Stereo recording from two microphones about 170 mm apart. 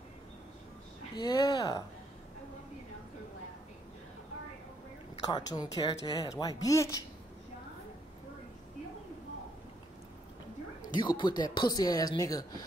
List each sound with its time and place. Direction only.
1.1 s speech: 25° left (ahead or behind)
5.2 s speech: 25° left (ahead or behind)
11.0 s speech: 25° left (ahead or behind)